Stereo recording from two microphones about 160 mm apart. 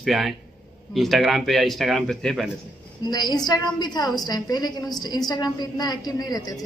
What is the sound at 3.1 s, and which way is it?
A woman's voice, 25° left (ahead or behind).